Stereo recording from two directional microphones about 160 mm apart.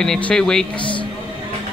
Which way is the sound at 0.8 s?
30° left (ahead or behind).